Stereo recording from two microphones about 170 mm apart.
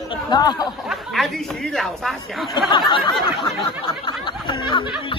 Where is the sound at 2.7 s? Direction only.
25° left (ahead or behind).